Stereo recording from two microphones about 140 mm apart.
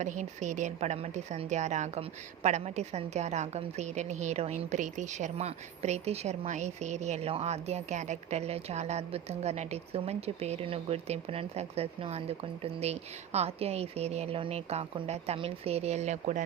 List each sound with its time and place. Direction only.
0.0 s speech: 60° right (ahead or behind)